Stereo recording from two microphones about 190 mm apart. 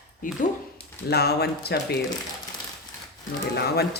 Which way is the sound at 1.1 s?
55° left (ahead or behind).